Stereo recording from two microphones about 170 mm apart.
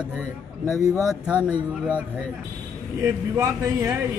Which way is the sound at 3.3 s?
20° right (ahead or behind).